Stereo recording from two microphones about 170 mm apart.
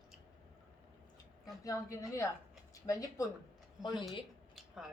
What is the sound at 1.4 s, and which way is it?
A woman's voice, 20° left (ahead or behind).